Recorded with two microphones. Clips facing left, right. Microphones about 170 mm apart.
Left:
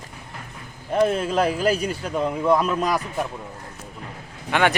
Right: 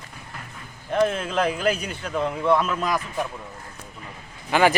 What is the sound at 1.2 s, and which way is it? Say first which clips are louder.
Speech: left 2 dB; 35° left (ahead or behind).